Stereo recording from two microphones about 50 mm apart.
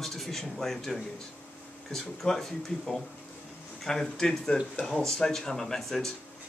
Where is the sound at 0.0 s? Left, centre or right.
Centre.